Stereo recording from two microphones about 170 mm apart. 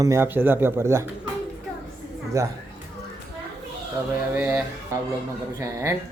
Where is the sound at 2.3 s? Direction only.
20° right (ahead or behind).